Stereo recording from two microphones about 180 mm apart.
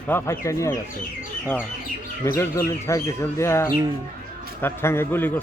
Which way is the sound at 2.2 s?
15° left (ahead or behind).